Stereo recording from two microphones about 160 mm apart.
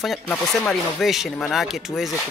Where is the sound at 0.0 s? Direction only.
Centre (ahead or behind).